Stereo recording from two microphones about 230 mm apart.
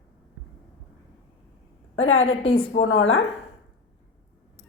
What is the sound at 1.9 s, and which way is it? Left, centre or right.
Speech, left.